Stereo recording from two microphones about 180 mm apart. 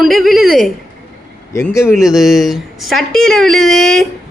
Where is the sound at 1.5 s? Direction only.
15° left (ahead or behind).